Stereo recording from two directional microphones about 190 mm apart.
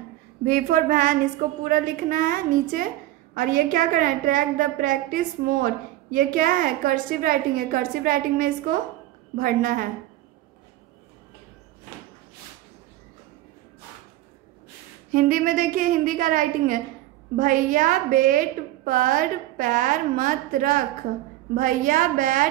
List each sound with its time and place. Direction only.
0.5 s a woman's voice: 45° right (ahead or behind)
15.0 s a woman's voice: 45° right (ahead or behind)